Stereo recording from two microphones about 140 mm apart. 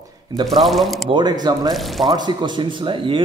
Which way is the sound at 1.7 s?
Centre (ahead or behind).